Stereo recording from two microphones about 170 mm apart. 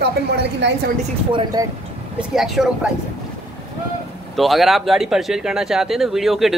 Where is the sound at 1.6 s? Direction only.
20° right (ahead or behind).